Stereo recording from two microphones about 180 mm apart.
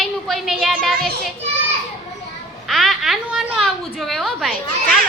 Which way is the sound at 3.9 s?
Centre (ahead or behind).